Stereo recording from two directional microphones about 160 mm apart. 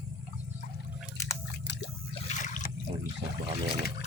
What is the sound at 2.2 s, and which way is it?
Trickle, 50° left (ahead or behind).